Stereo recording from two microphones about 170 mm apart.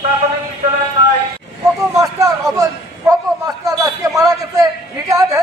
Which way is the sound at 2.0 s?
20° right (ahead or behind).